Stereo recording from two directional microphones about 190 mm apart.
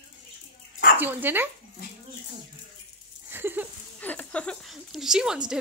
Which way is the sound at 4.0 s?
10° left (ahead or behind).